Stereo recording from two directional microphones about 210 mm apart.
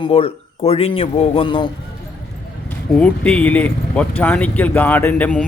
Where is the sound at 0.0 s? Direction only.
25° left (ahead or behind).